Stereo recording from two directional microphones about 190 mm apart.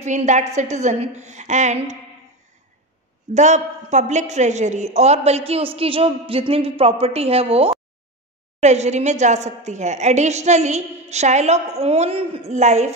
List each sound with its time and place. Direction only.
0.0 s a woman's voice: 40° right (ahead or behind)
3.3 s a woman's voice: 40° right (ahead or behind)